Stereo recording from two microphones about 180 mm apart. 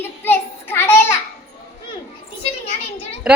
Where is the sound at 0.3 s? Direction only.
15° left (ahead or behind).